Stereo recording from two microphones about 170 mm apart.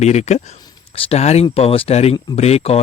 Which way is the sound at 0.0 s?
40° left (ahead or behind).